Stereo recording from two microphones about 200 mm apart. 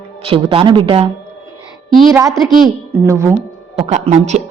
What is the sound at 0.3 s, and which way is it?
A woman's voice, 25° right (ahead or behind).